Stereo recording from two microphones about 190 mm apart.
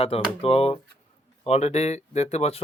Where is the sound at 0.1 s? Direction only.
30° left (ahead or behind).